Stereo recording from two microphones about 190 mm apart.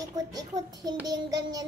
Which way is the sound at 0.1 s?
20° right (ahead or behind).